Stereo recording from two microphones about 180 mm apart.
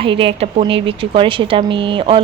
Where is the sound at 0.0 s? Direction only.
30° right (ahead or behind).